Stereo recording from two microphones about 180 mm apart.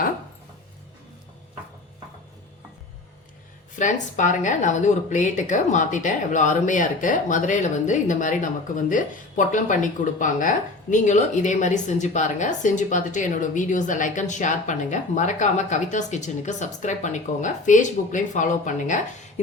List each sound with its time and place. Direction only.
3.8 s a woman's voice: 45° left (ahead or behind)